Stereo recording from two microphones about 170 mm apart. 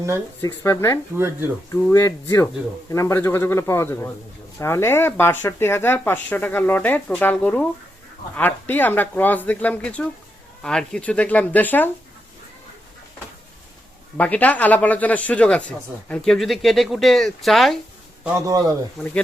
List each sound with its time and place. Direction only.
0.4 s speech: 15° left (ahead or behind)
1.1 s speech: 15° right (ahead or behind)
1.7 s speech: 20° left (ahead or behind)
14.2 s speech: 10° left (ahead or behind)
18.2 s a man's voice: 20° right (ahead or behind)